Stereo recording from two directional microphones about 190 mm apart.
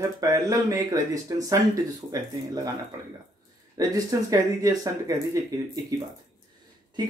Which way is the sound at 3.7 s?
20° right (ahead or behind).